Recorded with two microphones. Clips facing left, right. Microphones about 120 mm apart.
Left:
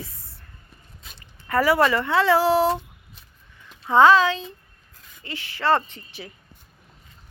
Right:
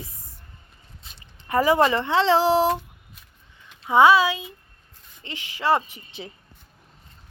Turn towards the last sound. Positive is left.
turn(degrees=-20)  # may be behind; listen again after turning